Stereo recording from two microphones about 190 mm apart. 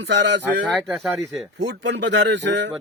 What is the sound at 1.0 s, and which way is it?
Speech, centre (ahead or behind).